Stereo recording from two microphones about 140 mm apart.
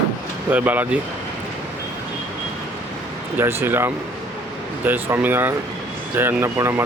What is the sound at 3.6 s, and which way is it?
Speech, 15° right (ahead or behind).